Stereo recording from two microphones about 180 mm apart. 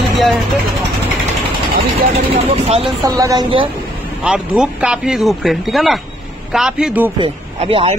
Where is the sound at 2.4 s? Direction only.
35° right (ahead or behind).